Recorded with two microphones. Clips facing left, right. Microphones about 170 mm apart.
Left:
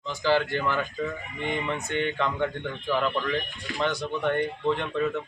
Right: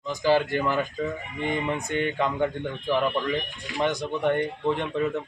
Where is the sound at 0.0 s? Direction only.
10° right (ahead or behind).